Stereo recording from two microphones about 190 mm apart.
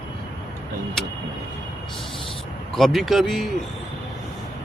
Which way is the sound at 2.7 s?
Centre (ahead or behind).